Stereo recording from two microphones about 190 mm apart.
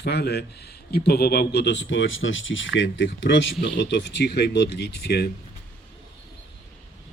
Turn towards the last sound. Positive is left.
turn(degrees=60)  # may be behind; listen again after turning